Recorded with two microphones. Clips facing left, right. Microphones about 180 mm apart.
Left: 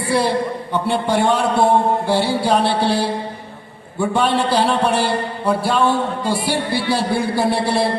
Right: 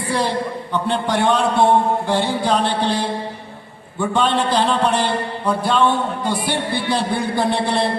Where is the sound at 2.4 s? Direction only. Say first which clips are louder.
Left 2 dB; 10° left (ahead or behind).